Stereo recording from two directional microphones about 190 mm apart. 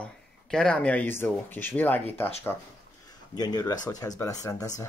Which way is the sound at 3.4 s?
20° left (ahead or behind).